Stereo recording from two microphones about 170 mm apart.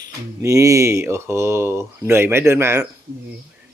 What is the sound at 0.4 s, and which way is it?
Speech, 15° right (ahead or behind).